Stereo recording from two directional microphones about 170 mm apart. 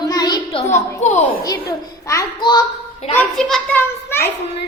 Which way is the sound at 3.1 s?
5° left (ahead or behind).